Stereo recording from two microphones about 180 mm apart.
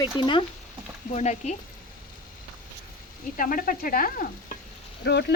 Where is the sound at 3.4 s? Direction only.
50° left (ahead or behind).